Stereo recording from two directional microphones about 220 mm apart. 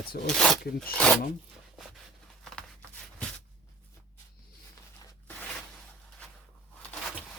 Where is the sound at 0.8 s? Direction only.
5° left (ahead or behind).